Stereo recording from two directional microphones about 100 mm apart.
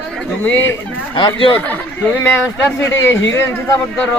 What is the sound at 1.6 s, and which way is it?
A man's voice, 15° left (ahead or behind).